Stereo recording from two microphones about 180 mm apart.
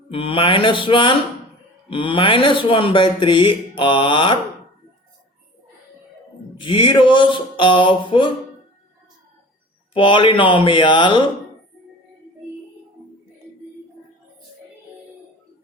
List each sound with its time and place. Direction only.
0.1 s speech: 30° left (ahead or behind)
6.6 s speech: 30° left (ahead or behind)
9.9 s speech: 25° left (ahead or behind)